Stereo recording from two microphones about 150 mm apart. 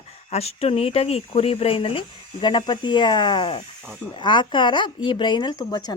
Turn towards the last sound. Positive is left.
turn(degrees=25)  # may be behind; listen again after turning